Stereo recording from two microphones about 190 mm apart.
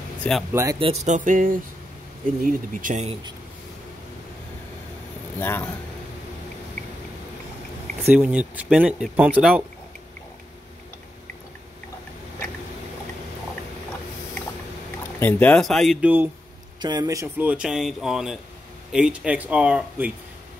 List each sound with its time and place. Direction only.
0.5 s speech: 15° right (ahead or behind)
0.7 s a sound: 30° right (ahead or behind)
2.4 s speech: 45° right (ahead or behind)
5.4 s speech: 10° left (ahead or behind)
8.0 s speech: 10° right (ahead or behind)
15.1 s a man's voice: 10° left (ahead or behind); by 16.3 s 10° right (ahead or behind)
16.8 s a man's voice: 20° right (ahead or behind); by 20.1 s 5° right (ahead or behind)